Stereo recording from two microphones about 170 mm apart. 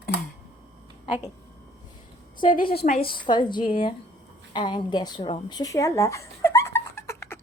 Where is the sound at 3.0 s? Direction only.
30° left (ahead or behind).